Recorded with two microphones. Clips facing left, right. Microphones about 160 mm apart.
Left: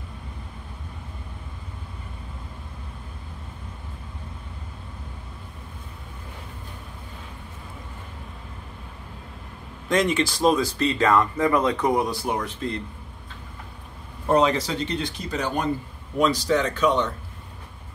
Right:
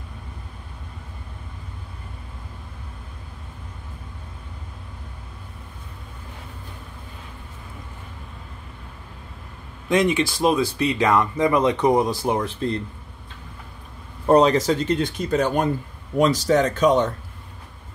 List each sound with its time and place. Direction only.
9.8 s speech: 15° right (ahead or behind)
12.6 s speech: 35° right (ahead or behind)
14.2 s speech: 35° right (ahead or behind)